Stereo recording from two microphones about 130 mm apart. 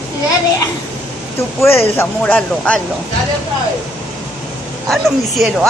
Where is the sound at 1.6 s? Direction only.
20° left (ahead or behind).